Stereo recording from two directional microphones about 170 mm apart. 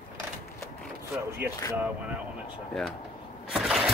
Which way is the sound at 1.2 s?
15° right (ahead or behind).